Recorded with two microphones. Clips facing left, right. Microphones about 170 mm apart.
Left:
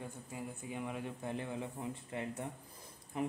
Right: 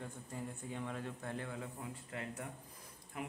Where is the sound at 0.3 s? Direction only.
10° left (ahead or behind).